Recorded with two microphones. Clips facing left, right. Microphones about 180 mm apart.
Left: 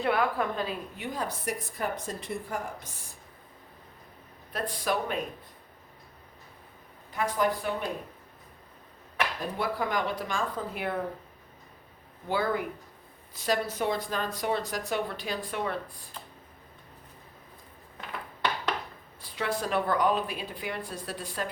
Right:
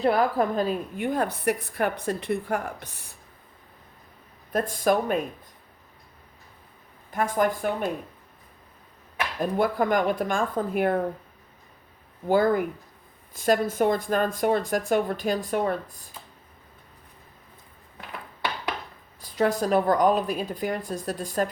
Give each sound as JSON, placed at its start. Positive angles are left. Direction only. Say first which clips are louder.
{"t": 0.0, "sound": "a woman's voice", "louder": "right 5 dB", "side_deg": -40}
{"t": 4.5, "sound": "speech", "louder": "right 7 dB", "side_deg": -45}
{"t": 7.1, "sound": "speech", "louder": "right 4 dB", "side_deg": -50}
{"t": 9.4, "sound": "speech", "louder": "right 12 dB", "side_deg": -50}
{"t": 12.3, "sound": "speech", "louder": "right 8 dB", "side_deg": -45}
{"t": 19.2, "sound": "speech", "louder": "right 8 dB", "side_deg": -40}